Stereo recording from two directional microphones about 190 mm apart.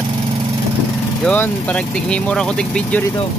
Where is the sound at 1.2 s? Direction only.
10° left (ahead or behind).